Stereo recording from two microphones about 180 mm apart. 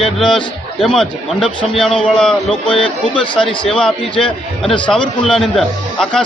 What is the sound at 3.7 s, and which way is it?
Speech, 5° left (ahead or behind).